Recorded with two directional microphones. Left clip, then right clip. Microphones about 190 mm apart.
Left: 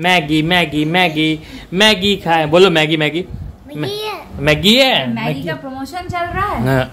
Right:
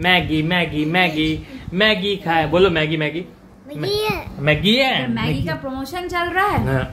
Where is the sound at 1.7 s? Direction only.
65° left (ahead or behind).